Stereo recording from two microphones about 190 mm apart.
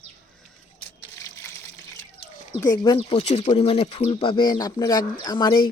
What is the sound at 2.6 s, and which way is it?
Speech, 20° left (ahead or behind).